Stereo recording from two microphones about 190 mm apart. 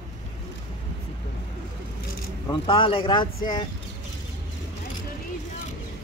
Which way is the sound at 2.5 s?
25° left (ahead or behind).